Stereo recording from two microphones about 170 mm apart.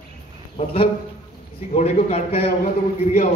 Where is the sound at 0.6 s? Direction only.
30° left (ahead or behind).